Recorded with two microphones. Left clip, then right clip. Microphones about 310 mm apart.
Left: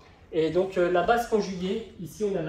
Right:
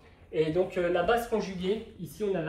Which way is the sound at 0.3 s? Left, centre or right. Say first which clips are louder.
Left 3 dB; centre.